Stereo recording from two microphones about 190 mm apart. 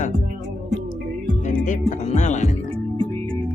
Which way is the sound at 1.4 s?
40° left (ahead or behind).